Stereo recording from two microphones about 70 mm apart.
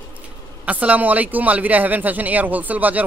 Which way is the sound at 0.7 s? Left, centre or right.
Right.